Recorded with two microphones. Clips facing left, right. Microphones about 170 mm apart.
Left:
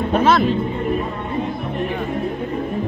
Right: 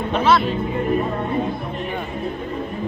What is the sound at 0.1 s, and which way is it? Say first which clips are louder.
Music: left 1 dB; 50° left (ahead or behind).